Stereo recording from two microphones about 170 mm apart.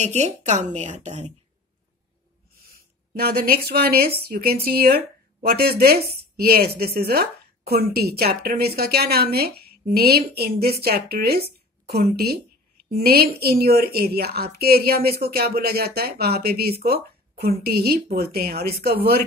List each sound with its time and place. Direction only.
0.0 s speech: 40° right (ahead or behind)
3.2 s a woman's voice: 65° right (ahead or behind)